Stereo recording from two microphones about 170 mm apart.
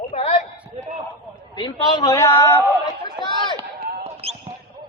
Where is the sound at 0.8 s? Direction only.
45° right (ahead or behind).